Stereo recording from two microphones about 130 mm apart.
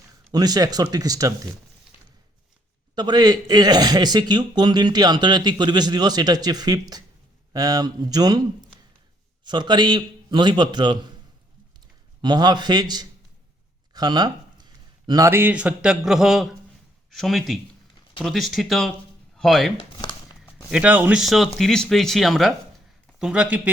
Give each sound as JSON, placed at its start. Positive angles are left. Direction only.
{"t": 0.3, "sound": "speech", "side_deg": -30}
{"t": 2.9, "sound": "a man's voice", "side_deg": -35}
{"t": 9.4, "sound": "a man's voice", "side_deg": -35}
{"t": 12.2, "sound": "a man's voice", "side_deg": -35}
{"t": 20.0, "sound": "a sound", "side_deg": 35}
{"t": 20.7, "sound": "a man's voice", "side_deg": -10}
{"t": 21.2, "sound": "a man's voice", "side_deg": 0}